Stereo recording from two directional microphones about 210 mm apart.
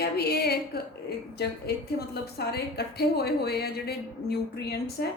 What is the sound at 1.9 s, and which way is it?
Speech, 50° left (ahead or behind).